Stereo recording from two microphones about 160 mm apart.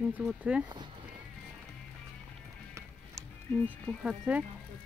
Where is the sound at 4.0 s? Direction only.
5° right (ahead or behind).